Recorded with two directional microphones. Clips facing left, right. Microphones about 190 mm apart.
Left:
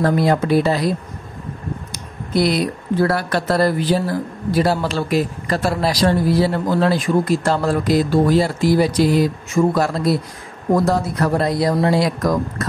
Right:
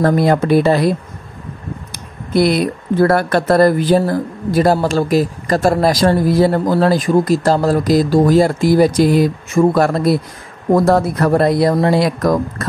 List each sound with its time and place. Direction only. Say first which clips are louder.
0.0 s speech: right 3 dB; 55° right (ahead or behind)
2.3 s speech: right 4 dB; 55° right (ahead or behind)